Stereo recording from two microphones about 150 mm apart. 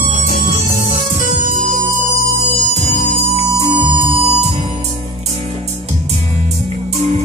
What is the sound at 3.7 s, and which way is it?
Music, 30° right (ahead or behind).